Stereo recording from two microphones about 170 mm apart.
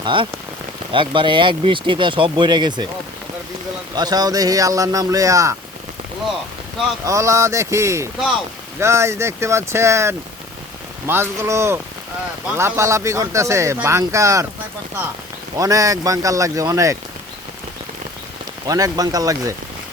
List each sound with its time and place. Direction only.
0.0 s speech: 30° right (ahead or behind)
3.9 s speech: 25° right (ahead or behind)
7.0 s speech: 20° right (ahead or behind)
15.5 s speech: 20° right (ahead or behind)
18.6 s speech: 20° right (ahead or behind)